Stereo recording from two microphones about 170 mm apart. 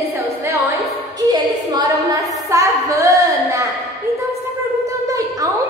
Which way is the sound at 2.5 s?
20° right (ahead or behind).